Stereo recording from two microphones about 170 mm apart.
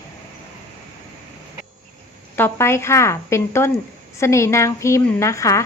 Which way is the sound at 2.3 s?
15° left (ahead or behind).